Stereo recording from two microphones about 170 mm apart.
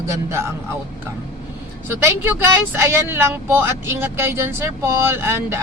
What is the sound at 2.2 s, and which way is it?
Speech, 15° right (ahead or behind).